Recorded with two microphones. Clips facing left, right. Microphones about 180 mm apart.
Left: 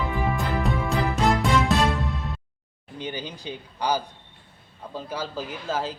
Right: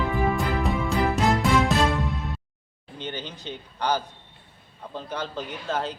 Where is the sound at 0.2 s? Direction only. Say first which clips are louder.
Right 1 dB; centre (ahead or behind).